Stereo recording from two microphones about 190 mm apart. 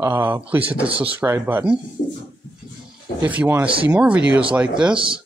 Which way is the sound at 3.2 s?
10° right (ahead or behind).